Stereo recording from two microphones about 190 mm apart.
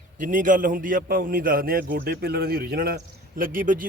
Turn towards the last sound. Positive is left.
turn(degrees=-45)  # may be behind; listen again after turning